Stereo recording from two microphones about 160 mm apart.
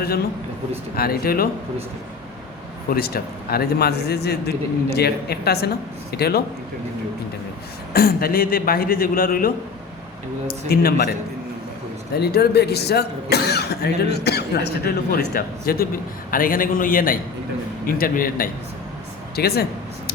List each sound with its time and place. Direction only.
0.9 s speech: 70° left (ahead or behind)
2.9 s a man's voice: 70° left (ahead or behind)
7.9 s speech: 70° left (ahead or behind)
10.7 s speech: 70° left (ahead or behind)
12.1 s speech: 80° left; by 18.4 s 65° left (ahead or behind)
19.4 s speech: 75° left (ahead or behind)